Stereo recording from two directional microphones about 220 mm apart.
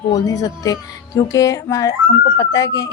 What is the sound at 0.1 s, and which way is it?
A woman's voice, 15° left (ahead or behind).